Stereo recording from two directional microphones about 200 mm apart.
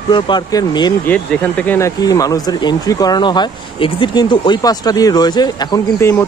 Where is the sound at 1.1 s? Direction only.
10° left (ahead or behind).